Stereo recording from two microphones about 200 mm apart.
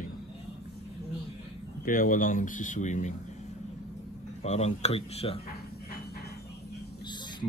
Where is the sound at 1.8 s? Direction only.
45° left (ahead or behind).